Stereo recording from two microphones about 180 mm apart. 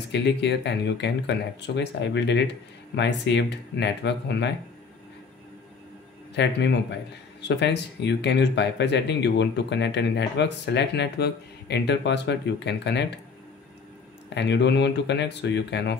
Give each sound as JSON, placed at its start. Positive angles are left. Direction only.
{"t": 0.1, "sound": "speech", "side_deg": 75}
{"t": 6.3, "sound": "speech", "side_deg": 75}
{"t": 14.3, "sound": "speech", "side_deg": 70}